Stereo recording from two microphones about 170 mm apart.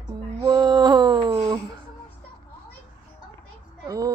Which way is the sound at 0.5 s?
25° right (ahead or behind).